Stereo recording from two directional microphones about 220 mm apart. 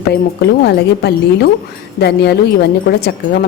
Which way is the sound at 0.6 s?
50° left (ahead or behind).